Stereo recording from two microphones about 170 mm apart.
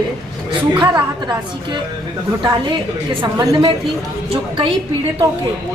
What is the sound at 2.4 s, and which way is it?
A woman's voice, 25° right (ahead or behind).